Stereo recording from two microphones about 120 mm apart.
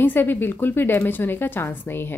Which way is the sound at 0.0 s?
15° left (ahead or behind).